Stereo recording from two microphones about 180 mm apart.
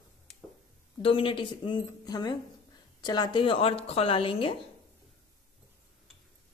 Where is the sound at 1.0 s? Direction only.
30° left (ahead or behind).